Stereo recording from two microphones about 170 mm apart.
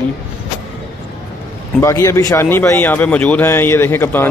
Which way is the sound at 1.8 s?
15° left (ahead or behind).